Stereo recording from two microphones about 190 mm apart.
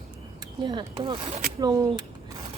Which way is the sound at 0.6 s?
25° right (ahead or behind).